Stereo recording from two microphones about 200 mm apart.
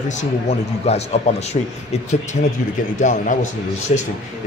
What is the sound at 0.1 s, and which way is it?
Speech, 35° left (ahead or behind).